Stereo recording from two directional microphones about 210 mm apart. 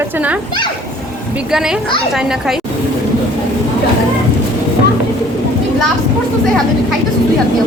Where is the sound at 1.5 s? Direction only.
Centre (ahead or behind).